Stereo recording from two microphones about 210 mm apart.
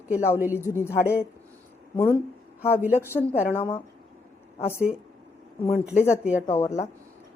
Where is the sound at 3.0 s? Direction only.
10° left (ahead or behind).